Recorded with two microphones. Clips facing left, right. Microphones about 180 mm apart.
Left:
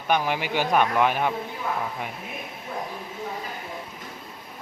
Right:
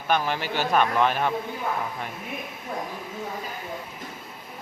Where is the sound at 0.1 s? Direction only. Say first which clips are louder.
Left 1 dB; 15° left (ahead or behind).